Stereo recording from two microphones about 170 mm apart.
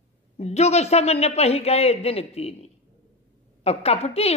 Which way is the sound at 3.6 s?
35° left (ahead or behind).